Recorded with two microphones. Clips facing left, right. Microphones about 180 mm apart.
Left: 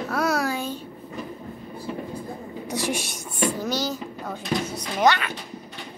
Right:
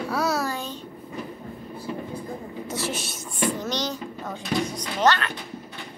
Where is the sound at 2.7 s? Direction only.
15° left (ahead or behind).